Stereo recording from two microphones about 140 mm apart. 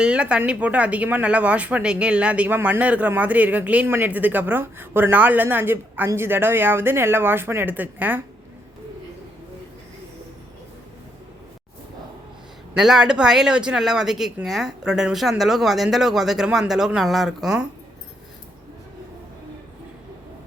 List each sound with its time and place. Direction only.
0.0 s speech: 10° right (ahead or behind)
12.7 s speech: 5° right (ahead or behind)